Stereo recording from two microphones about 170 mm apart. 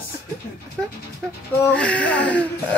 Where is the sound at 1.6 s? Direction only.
5° left (ahead or behind).